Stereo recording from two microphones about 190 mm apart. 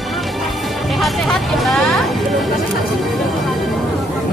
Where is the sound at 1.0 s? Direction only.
Centre (ahead or behind).